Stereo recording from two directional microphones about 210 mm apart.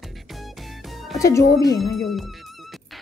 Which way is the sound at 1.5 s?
15° left (ahead or behind).